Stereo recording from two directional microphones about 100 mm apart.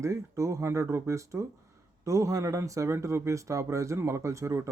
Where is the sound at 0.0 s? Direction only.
30° right (ahead or behind).